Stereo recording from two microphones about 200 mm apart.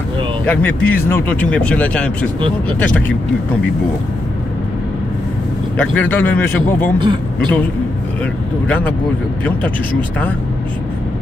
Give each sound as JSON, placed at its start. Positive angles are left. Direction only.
{"t": 0.5, "sound": "speech", "side_deg": 10}
{"t": 5.8, "sound": "speech", "side_deg": 10}
{"t": 7.0, "sound": "speech", "side_deg": -25}
{"t": 8.6, "sound": "speech", "side_deg": 5}